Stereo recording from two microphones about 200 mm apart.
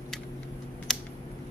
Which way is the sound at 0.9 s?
Centre (ahead or behind).